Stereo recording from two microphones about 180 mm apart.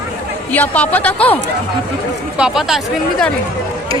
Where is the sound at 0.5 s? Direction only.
10° left (ahead or behind).